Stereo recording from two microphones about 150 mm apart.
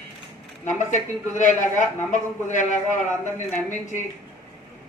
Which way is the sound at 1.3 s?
55° left (ahead or behind).